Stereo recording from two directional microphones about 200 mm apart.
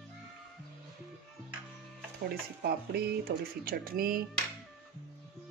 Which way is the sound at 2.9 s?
50° right (ahead or behind).